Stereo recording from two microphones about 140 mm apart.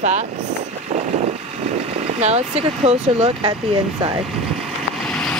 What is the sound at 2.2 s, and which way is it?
Speech, 50° right (ahead or behind).